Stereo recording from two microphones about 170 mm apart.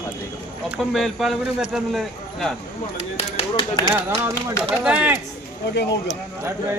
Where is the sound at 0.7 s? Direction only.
Centre (ahead or behind).